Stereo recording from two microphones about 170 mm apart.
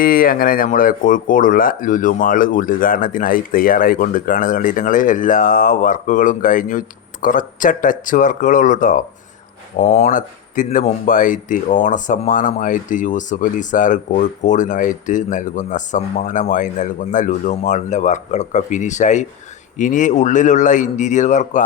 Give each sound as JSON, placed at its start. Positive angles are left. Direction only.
{"t": 0.0, "sound": "speech", "side_deg": 55}